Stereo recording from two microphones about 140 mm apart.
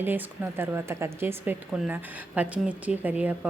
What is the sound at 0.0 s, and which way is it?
A woman's voice, 15° right (ahead or behind).